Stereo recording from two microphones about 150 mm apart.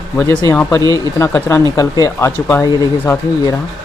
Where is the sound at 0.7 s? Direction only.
25° left (ahead or behind).